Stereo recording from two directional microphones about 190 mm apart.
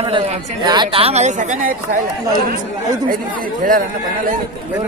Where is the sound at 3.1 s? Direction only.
45° right (ahead or behind).